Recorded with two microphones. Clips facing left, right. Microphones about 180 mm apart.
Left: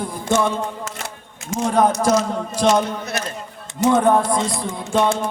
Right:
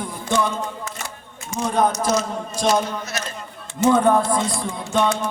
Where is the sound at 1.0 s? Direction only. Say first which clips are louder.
Left 1 dB; 80° left.